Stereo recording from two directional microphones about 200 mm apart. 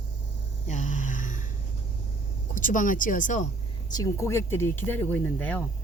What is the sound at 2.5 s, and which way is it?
Speech, 40° left (ahead or behind).